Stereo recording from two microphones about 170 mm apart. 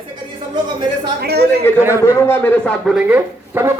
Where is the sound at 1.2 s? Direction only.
70° right (ahead or behind).